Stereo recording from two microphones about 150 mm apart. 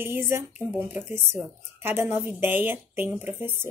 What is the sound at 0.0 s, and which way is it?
A woman's voice, 15° right (ahead or behind).